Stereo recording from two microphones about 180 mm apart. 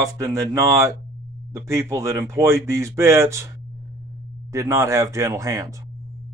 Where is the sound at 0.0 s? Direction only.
15° right (ahead or behind).